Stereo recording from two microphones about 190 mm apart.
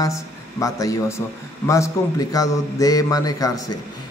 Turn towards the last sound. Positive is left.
turn(degrees=20)  # may be behind; listen again after turning